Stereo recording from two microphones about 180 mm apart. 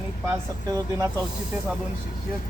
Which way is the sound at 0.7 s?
15° right (ahead or behind).